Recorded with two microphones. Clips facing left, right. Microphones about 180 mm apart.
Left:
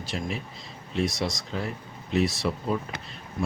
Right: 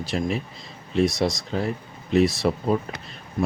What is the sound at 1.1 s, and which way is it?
Speech, 35° right (ahead or behind).